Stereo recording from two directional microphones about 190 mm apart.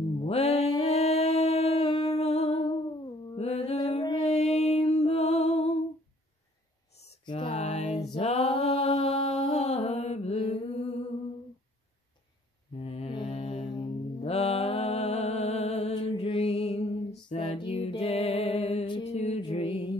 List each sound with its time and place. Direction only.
0.2 s mantra: 30° left (ahead or behind)
3.3 s a sound: 35° left (ahead or behind)
4.2 s music: 35° left (ahead or behind)
7.2 s mantra: 25° left (ahead or behind)
12.8 s mantra: 30° left (ahead or behind)
17.3 s music: 35° left (ahead or behind)